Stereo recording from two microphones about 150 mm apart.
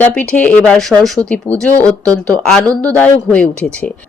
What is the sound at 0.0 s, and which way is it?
Speech, 10° left (ahead or behind).